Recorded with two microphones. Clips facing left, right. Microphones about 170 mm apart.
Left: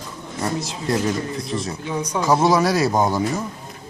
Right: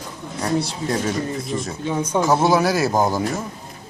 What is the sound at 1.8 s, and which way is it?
Speech, 25° right (ahead or behind).